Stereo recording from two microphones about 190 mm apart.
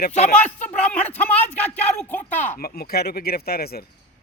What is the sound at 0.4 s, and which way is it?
Speech, 10° left (ahead or behind).